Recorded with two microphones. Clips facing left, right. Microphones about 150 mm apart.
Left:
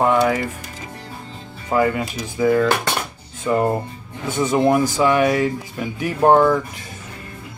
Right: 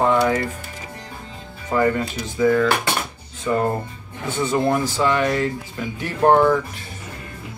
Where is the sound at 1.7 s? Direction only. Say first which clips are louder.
Left 1 dB; 15° left (ahead or behind).